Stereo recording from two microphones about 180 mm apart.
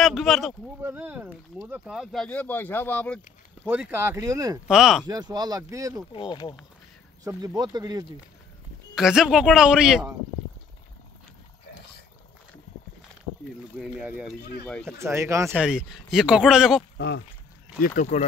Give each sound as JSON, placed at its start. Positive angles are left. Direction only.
{"t": 0.0, "sound": "speech", "side_deg": 0}
{"t": 3.6, "sound": "speech", "side_deg": -10}
{"t": 4.6, "sound": "speech", "side_deg": -5}
{"t": 5.0, "sound": "speech", "side_deg": -20}
{"t": 6.1, "sound": "speech", "side_deg": 25}
{"t": 7.2, "sound": "speech", "side_deg": -20}
{"t": 8.9, "sound": "speech", "side_deg": -5}
{"t": 13.7, "sound": "speech", "side_deg": -5}
{"t": 15.0, "sound": "speech", "side_deg": -15}
{"t": 16.9, "sound": "speech", "side_deg": 75}
{"t": 17.8, "sound": "speech", "side_deg": 50}